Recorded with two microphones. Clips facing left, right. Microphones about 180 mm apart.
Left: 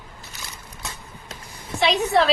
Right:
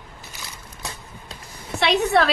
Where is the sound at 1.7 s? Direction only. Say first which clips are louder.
Right 1 dB; 70° right (ahead or behind).